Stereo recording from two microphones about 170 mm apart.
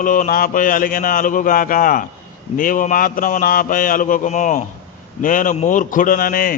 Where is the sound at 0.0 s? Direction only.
50° left (ahead or behind).